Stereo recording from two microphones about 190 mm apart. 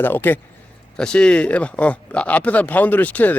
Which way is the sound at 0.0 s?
10° left (ahead or behind).